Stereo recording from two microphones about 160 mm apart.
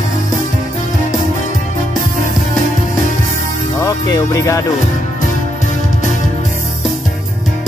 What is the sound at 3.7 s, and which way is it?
Speech, 20° left (ahead or behind).